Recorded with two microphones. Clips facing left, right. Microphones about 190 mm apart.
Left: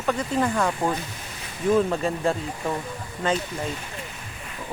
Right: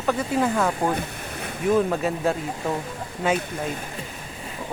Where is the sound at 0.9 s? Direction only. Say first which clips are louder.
Right 4 dB; 60° right (ahead or behind).